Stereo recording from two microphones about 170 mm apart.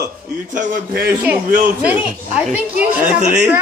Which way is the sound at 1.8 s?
10° right (ahead or behind).